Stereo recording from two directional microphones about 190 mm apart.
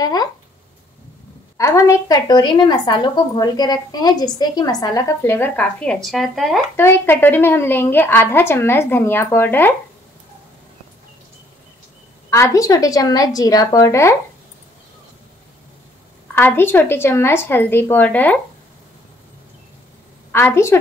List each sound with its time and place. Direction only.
0.0 s a sound: 20° left (ahead or behind)
1.6 s a woman's voice: 15° left (ahead or behind); by 6.6 s centre (ahead or behind)
6.8 s a woman's voice: 10° left (ahead or behind)
12.3 s a woman's voice: 15° left (ahead or behind)
16.3 s a woman's voice: 10° left (ahead or behind)
20.3 s a woman's voice: 10° left (ahead or behind)